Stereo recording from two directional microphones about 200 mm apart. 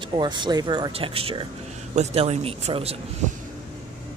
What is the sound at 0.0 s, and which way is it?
A man's voice, 25° right (ahead or behind).